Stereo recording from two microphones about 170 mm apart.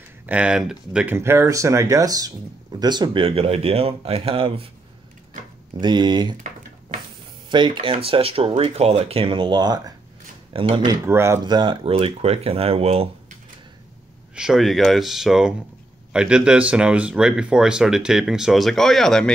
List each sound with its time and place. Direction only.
0.3 s speech: 5° right (ahead or behind); by 4.6 s 35° right (ahead or behind)
5.8 s speech: 25° right (ahead or behind)
7.4 s speech: 30° right (ahead or behind)
11.1 s speech: 15° right (ahead or behind); by 13.1 s 35° right (ahead or behind)
14.3 s speech: 5° right (ahead or behind)